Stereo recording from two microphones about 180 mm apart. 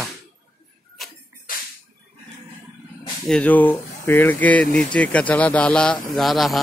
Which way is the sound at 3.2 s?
5° left (ahead or behind).